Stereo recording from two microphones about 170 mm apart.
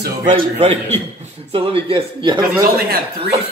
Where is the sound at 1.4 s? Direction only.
35° right (ahead or behind).